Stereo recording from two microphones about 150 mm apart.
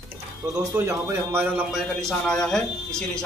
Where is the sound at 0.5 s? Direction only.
15° right (ahead or behind).